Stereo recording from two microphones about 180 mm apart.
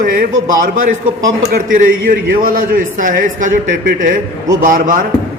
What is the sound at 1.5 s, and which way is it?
A man's voice, 50° right (ahead or behind).